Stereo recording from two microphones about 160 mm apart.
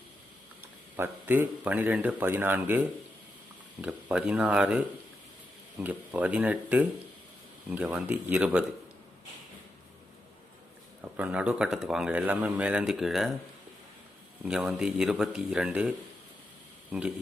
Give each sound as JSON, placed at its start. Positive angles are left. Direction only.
{"t": 0.9, "sound": "a man's voice", "side_deg": -15}
{"t": 5.8, "sound": "speech", "side_deg": -10}
{"t": 11.0, "sound": "a man's voice", "side_deg": -10}
{"t": 14.4, "sound": "a man's voice", "side_deg": -5}